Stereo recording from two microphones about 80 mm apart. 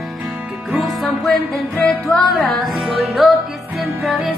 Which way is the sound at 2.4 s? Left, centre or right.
Centre.